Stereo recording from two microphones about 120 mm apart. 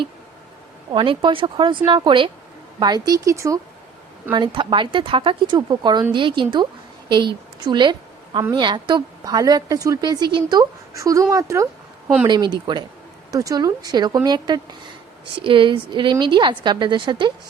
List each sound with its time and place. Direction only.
0.9 s a woman's voice: 45° right (ahead or behind); by 3.6 s 25° right (ahead or behind)
4.4 s a woman's voice: 40° right (ahead or behind); by 12.1 s 25° right (ahead or behind)
12.3 s a woman's voice: 40° right (ahead or behind)